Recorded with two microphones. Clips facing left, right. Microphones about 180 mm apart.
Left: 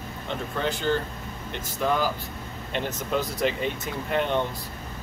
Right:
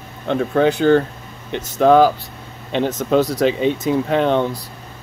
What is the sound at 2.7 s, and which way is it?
Speech, 90° right.